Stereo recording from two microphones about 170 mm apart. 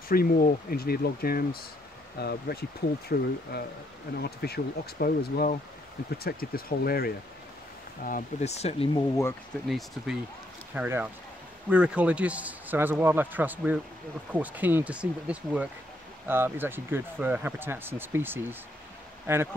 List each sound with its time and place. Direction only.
0.1 s speech: 60° left (ahead or behind)
8.0 s speech: 45° left (ahead or behind)
8.9 s speech: 15° left (ahead or behind)
9.7 s speech: centre (ahead or behind)